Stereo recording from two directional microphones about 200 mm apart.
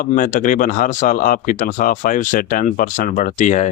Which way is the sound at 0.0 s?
40° left (ahead or behind).